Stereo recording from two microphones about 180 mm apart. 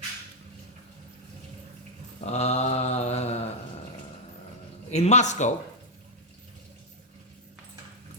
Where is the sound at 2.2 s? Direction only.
35° left (ahead or behind).